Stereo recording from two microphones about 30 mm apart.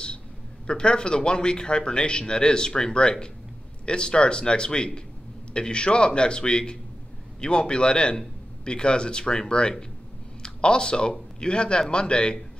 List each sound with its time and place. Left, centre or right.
0.7 s speech: left